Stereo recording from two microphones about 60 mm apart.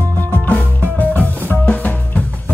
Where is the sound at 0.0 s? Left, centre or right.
Left.